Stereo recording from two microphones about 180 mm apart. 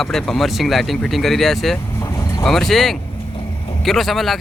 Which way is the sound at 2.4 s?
Centre (ahead or behind).